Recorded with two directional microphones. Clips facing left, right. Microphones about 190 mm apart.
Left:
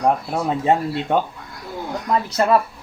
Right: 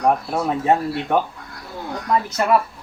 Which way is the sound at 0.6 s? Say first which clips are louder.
Left 1 dB; 25° left (ahead or behind).